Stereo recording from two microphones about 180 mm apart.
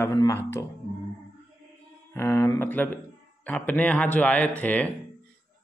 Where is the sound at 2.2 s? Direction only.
15° left (ahead or behind).